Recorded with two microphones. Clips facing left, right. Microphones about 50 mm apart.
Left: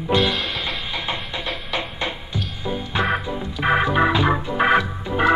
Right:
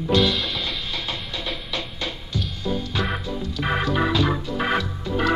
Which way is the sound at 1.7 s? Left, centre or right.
Left.